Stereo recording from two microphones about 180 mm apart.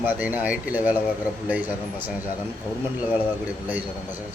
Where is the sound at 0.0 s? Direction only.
10° right (ahead or behind).